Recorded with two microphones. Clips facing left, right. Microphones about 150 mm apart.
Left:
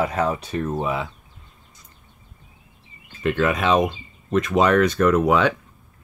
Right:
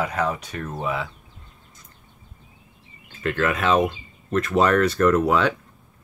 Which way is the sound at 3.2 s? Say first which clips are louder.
Left 2 dB; 15° left (ahead or behind).